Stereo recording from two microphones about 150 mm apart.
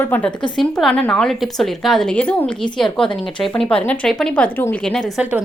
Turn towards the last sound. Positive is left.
turn(degrees=0)  # may be behind; listen again after turning